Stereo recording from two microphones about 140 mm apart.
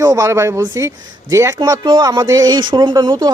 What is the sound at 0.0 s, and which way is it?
Speech, 25° right (ahead or behind).